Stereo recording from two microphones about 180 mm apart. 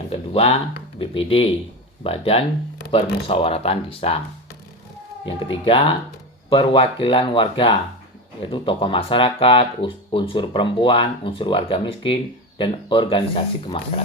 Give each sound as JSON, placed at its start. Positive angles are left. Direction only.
{"t": 0.1, "sound": "speech", "side_deg": 35}
{"t": 5.2, "sound": "speech", "side_deg": 30}